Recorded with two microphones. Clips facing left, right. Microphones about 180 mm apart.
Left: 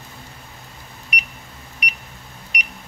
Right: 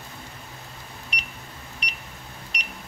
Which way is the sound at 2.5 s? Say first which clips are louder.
Left 7 dB; 10° left (ahead or behind).